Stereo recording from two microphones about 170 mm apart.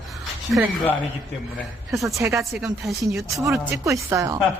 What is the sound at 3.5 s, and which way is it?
Speech, 15° right (ahead or behind).